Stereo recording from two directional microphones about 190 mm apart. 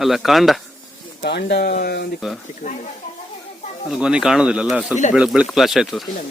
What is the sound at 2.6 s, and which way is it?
Speech, 40° left (ahead or behind).